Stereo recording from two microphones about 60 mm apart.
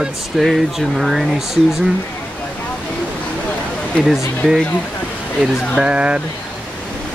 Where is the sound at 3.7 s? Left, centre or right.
Centre.